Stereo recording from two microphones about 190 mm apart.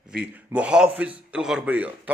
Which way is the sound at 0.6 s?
5° right (ahead or behind).